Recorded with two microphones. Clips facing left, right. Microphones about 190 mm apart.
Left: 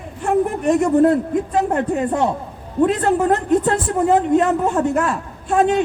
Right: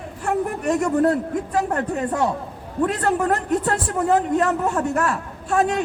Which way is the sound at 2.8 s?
20° left (ahead or behind).